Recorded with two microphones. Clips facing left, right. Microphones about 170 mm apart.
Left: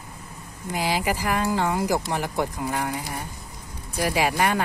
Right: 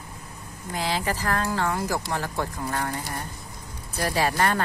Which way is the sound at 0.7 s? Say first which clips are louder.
Left 2 dB; 10° left (ahead or behind).